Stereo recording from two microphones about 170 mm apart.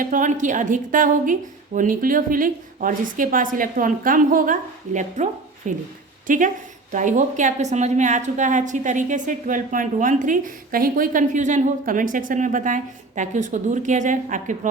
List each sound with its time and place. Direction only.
0.0 s a woman's voice: 50° right (ahead or behind)